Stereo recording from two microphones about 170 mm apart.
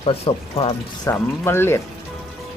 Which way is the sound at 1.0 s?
15° left (ahead or behind).